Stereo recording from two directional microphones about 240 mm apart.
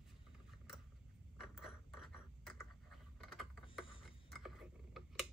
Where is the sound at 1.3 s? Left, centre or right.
Centre.